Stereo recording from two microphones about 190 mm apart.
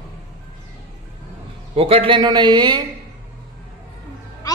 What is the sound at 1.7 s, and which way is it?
A man's voice, 30° right (ahead or behind).